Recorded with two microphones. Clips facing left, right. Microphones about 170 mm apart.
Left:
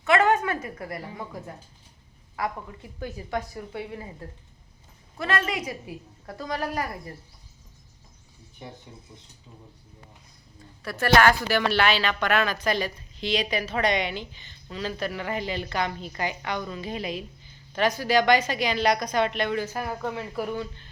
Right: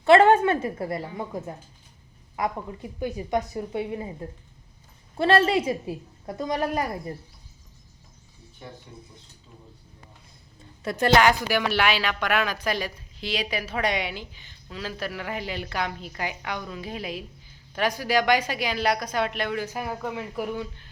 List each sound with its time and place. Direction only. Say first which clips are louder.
0.0 s a woman's voice: right 5 dB; 30° right (ahead or behind)
5.1 s a woman's voice: right 8 dB; 30° right (ahead or behind)
8.6 s speech: left 1 dB; 20° left (ahead or behind)
10.8 s a woman's voice: right 1 dB; 20° right (ahead or behind)